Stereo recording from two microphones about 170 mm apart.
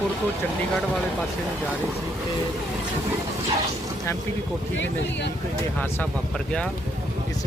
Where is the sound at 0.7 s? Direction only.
Centre (ahead or behind).